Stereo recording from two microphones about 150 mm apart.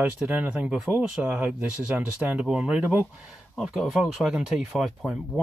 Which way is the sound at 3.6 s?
Centre (ahead or behind).